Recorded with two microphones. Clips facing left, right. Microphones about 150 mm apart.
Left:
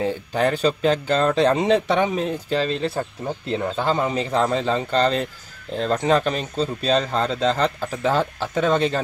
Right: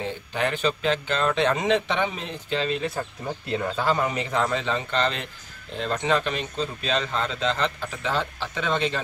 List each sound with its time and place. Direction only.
0.0 s a man's voice: 40° left (ahead or behind)
3.4 s a man's voice: 25° left (ahead or behind); by 9.0 s 40° left (ahead or behind)